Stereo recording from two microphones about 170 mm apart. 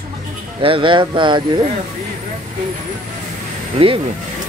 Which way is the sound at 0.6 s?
30° right (ahead or behind).